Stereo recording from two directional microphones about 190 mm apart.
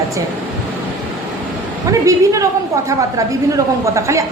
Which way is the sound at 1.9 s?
15° right (ahead or behind).